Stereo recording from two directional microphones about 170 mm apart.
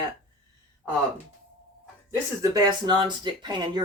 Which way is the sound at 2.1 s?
20° right (ahead or behind).